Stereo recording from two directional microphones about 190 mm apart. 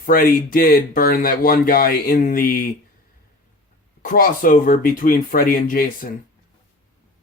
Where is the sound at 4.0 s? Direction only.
45° left (ahead or behind).